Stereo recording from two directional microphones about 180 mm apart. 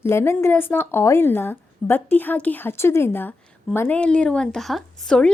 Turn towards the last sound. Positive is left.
turn(degrees=5)  # may be behind; listen again after turning